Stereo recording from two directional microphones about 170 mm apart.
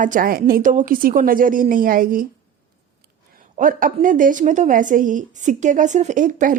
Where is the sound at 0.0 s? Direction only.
50° right (ahead or behind).